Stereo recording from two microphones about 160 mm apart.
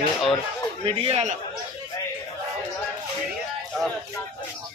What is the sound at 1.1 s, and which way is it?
Speech, 45° right (ahead or behind).